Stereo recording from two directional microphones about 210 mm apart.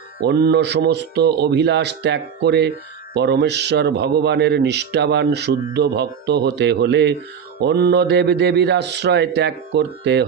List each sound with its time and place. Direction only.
0.2 s a man's voice: 50° right (ahead or behind)